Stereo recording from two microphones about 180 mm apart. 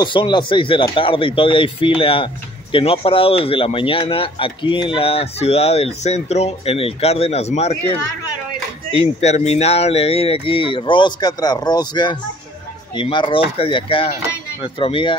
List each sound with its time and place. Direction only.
0.0 s speech: 25° left (ahead or behind)
9.2 s speech: 35° left (ahead or behind)